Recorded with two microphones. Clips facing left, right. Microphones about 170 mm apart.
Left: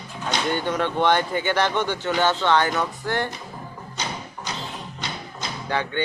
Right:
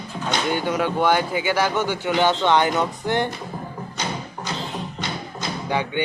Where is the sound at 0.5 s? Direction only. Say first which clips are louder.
Right 2 dB; 10° right (ahead or behind).